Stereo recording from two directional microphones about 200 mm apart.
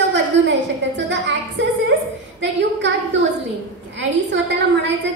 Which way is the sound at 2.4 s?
65° right (ahead or behind).